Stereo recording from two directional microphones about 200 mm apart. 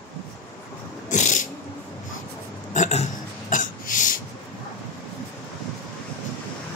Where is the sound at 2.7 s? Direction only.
35° left (ahead or behind).